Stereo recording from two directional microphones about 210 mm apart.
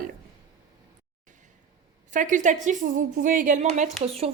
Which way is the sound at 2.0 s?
35° right (ahead or behind).